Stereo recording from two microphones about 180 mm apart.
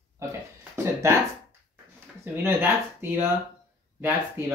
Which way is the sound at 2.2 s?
10° right (ahead or behind).